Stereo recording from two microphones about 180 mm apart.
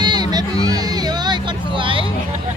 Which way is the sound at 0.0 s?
25° right (ahead or behind).